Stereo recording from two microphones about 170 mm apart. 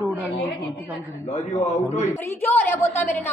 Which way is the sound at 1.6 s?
45° left (ahead or behind).